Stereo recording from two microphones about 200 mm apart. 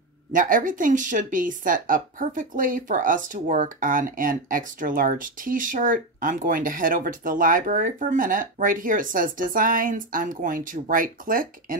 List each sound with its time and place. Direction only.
0.3 s speech: 40° right (ahead or behind)